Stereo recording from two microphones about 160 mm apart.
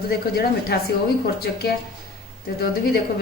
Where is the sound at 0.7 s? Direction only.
90° left.